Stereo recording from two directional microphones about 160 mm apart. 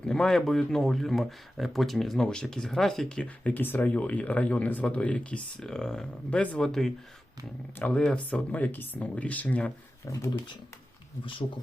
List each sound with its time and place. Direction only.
0.0 s speech: 5° left (ahead or behind)
10.1 s speech: 20° left (ahead or behind)